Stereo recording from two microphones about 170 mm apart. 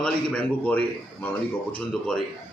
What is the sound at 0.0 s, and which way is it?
A man's voice, 10° left (ahead or behind).